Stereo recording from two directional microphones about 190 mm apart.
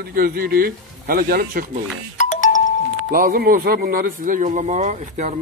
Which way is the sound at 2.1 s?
40° left (ahead or behind).